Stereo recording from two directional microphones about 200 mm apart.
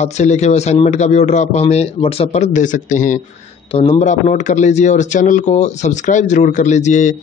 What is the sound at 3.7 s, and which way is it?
Speech, 30° left (ahead or behind).